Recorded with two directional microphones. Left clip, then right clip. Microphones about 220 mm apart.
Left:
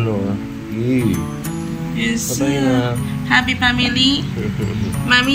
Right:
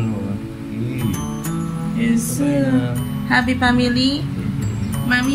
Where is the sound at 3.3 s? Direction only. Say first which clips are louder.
Left 2 dB; 25° right (ahead or behind).